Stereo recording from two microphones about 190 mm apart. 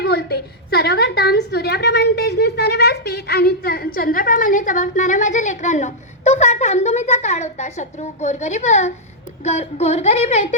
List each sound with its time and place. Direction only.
0.0 s a woman's voice: 60° left (ahead or behind); by 10.5 s 35° left (ahead or behind)